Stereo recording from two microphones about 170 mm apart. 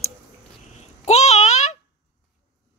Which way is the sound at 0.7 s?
40° left (ahead or behind).